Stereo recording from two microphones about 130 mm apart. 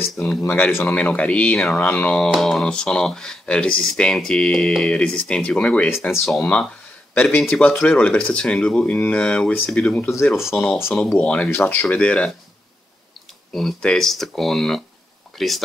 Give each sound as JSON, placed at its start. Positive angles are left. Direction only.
{"t": 0.1, "sound": "speech", "side_deg": 5}
{"t": 0.4, "sound": "speech", "side_deg": 15}
{"t": 7.2, "sound": "speech", "side_deg": 10}
{"t": 10.0, "sound": "speech", "side_deg": 20}
{"t": 13.5, "sound": "speech", "side_deg": 5}